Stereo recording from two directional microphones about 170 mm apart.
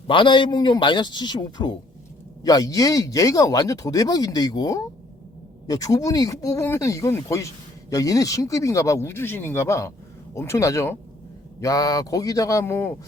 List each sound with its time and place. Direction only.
0.1 s speech: 30° left (ahead or behind)